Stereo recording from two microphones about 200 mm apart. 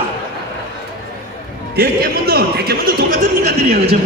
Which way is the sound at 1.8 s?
50° right (ahead or behind).